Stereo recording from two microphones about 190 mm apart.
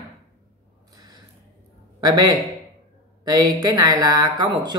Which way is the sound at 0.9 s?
20° right (ahead or behind).